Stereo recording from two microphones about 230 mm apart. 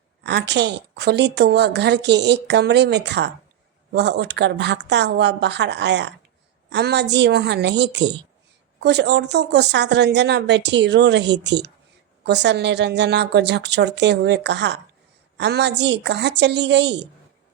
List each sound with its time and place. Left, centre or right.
0.2 s a woman's voice: right